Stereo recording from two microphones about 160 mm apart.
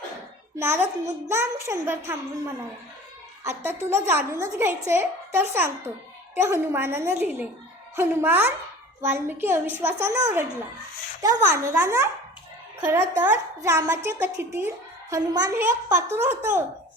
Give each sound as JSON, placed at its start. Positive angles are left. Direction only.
{"t": 0.5, "sound": "a woman's voice", "side_deg": -15}
{"t": 11.5, "sound": "a woman's voice", "side_deg": -15}